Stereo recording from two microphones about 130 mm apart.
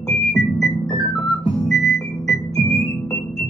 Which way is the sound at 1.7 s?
Centre (ahead or behind).